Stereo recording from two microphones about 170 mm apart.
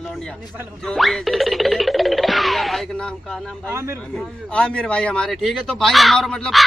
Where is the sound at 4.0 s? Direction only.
5° left (ahead or behind).